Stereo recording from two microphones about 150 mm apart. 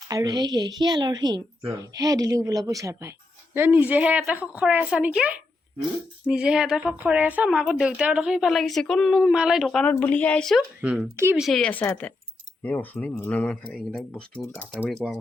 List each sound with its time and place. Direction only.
0.1 s a woman's voice: 25° right (ahead or behind); by 10.6 s 5° left (ahead or behind)
10.8 s speech: 5° right (ahead or behind)